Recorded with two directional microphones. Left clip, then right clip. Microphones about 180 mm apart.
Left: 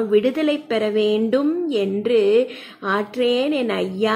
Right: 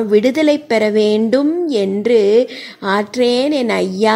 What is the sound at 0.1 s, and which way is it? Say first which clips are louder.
A woman's voice: right 7 dB; 35° right (ahead or behind).